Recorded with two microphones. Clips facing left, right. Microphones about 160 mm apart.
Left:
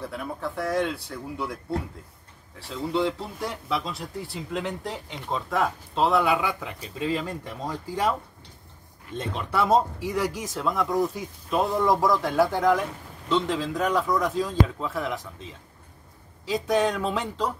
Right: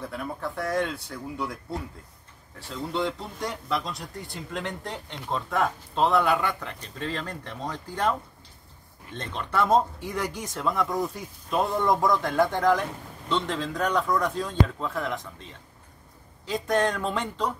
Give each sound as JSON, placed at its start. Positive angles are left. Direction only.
{"t": 0.0, "sound": "speech", "side_deg": 0}